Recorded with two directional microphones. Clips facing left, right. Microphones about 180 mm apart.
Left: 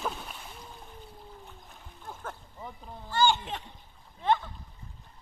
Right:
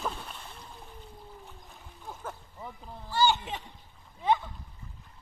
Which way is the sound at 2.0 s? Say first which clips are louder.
Even; 5° right (ahead or behind).